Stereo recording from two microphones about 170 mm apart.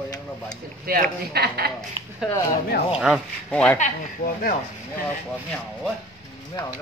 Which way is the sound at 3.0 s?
Centre (ahead or behind).